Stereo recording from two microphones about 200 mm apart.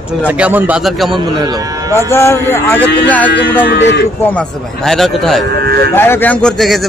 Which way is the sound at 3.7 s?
60° left (ahead or behind).